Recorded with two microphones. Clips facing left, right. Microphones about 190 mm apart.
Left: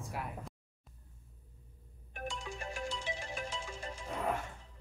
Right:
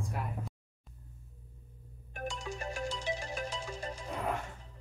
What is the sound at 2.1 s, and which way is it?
Ringtone, 40° right (ahead or behind).